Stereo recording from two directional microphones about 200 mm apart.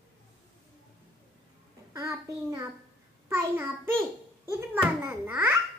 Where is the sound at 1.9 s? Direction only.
15° right (ahead or behind).